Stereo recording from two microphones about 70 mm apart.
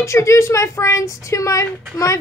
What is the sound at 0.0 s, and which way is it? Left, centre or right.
A woman's voice, left.